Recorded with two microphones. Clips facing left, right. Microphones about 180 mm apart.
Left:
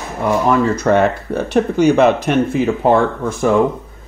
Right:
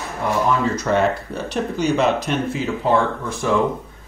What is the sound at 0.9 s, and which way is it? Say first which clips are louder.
Speech: left 4 dB; 55° left (ahead or behind).